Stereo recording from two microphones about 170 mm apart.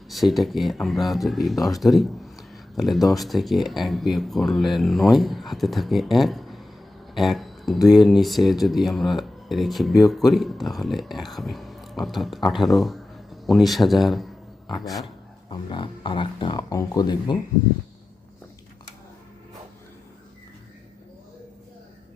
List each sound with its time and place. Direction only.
0.1 s speech: centre (ahead or behind)
15.4 s speech: 30° left (ahead or behind)